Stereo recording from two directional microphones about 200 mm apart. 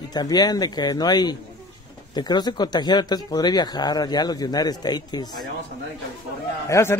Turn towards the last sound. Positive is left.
turn(degrees=15)  # may be behind; listen again after turning